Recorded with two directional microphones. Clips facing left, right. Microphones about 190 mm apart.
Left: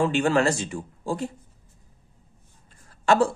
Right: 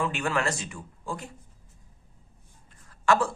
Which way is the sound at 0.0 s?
30° left (ahead or behind).